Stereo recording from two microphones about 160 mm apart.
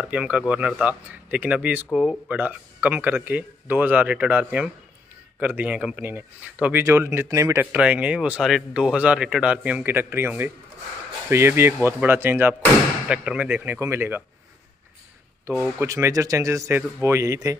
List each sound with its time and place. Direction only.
0.0 s speech: 5° right (ahead or behind)
7.7 s speech: 10° right (ahead or behind)
15.5 s speech: 20° right (ahead or behind)